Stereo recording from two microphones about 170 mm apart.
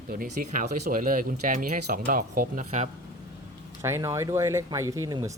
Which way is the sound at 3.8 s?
15° right (ahead or behind).